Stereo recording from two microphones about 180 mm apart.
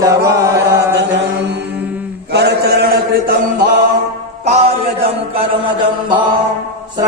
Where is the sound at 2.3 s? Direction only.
65° right (ahead or behind).